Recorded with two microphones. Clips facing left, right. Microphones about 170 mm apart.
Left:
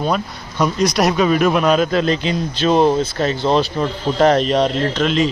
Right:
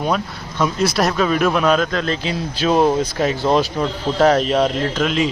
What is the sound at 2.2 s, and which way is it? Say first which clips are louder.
Speech: left 2 dB; 5° right (ahead or behind).